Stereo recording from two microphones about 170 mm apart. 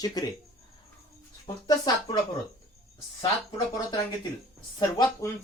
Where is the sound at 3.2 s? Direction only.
25° left (ahead or behind).